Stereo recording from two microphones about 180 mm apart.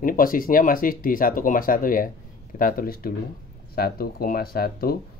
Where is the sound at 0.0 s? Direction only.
50° left (ahead or behind).